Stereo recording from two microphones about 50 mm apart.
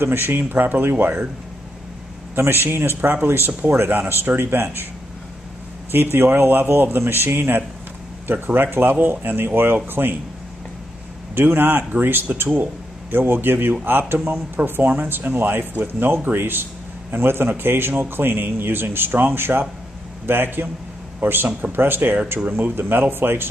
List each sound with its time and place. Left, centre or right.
0.0 s a man's voice: right
2.3 s a man's voice: right
3.3 s a man's voice: right
6.1 s a man's voice: right
6.5 s a man's voice: right
11.3 s a man's voice: right